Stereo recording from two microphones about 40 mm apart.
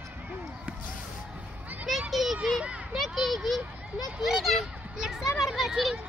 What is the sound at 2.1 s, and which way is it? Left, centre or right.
Children playing, centre.